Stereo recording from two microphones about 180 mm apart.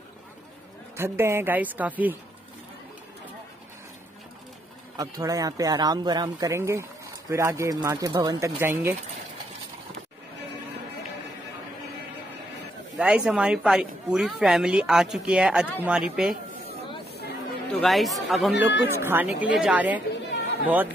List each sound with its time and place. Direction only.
0.9 s a woman's voice: 15° right (ahead or behind)
4.9 s speech: 20° right (ahead or behind)
12.9 s speech: 5° right (ahead or behind)
17.7 s speech: centre (ahead or behind)
18.9 s a woman's voice: 15° right (ahead or behind)